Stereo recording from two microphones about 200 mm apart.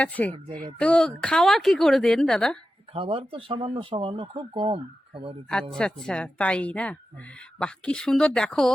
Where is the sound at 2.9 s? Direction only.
30° right (ahead or behind).